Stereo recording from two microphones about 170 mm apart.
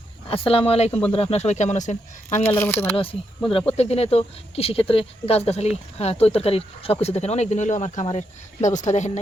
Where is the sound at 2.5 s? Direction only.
10° left (ahead or behind).